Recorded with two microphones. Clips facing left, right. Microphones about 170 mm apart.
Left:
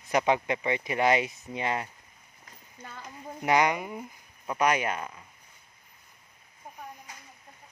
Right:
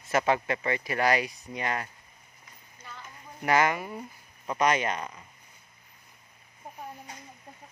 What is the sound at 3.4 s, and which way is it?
Speech, 20° left (ahead or behind).